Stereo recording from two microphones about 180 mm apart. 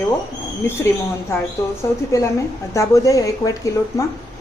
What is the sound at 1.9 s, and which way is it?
Speech, 10° left (ahead or behind).